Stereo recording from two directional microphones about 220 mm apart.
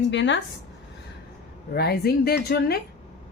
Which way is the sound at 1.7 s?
45° left (ahead or behind).